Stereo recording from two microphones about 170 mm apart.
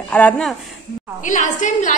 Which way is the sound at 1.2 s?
45° left (ahead or behind).